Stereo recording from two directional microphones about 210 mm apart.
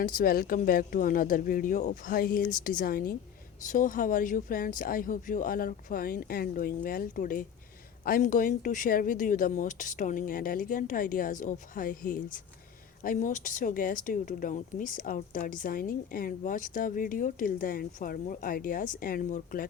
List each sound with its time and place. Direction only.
0.0 s speech: 45° left (ahead or behind)